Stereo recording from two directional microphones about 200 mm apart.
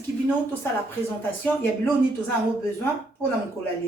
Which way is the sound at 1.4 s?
10° left (ahead or behind).